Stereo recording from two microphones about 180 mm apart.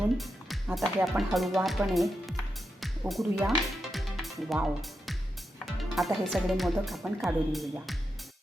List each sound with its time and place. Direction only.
0.2 s music: centre (ahead or behind)
0.9 s speech: 5° right (ahead or behind)
2.8 s music: centre (ahead or behind)
5.6 s speech: centre (ahead or behind)